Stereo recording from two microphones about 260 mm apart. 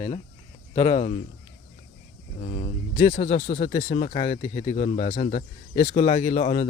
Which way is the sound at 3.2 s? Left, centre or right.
Left.